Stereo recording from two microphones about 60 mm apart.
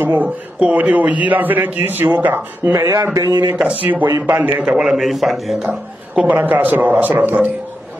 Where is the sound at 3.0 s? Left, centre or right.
Right.